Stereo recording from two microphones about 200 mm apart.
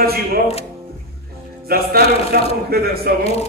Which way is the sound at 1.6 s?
50° right (ahead or behind).